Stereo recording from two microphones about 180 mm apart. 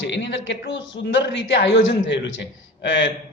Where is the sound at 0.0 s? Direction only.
85° left.